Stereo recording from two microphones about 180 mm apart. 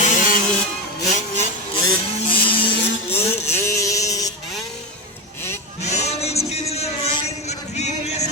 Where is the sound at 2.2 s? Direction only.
30° left (ahead or behind).